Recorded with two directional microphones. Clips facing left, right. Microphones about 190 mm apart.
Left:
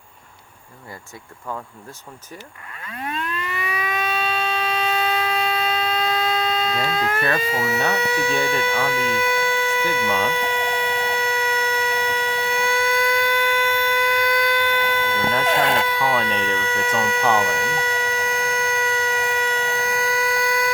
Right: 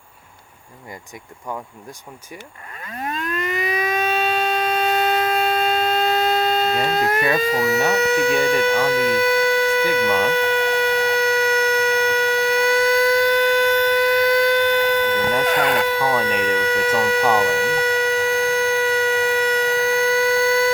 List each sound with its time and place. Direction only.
2.8 s civil defense siren: 35° right (ahead or behind)
7.4 s speech: 40° right (ahead or behind)
8.0 s a sound: 40° right (ahead or behind)
15.9 s speech: 40° right (ahead or behind)
17.3 s siren: 40° right (ahead or behind)